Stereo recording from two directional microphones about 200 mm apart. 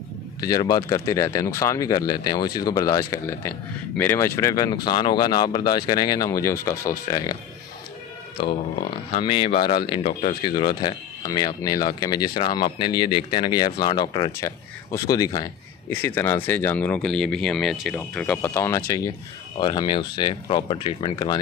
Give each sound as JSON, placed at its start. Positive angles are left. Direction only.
{"t": 0.4, "sound": "speech", "side_deg": 20}
{"t": 9.1, "sound": "speech", "side_deg": 25}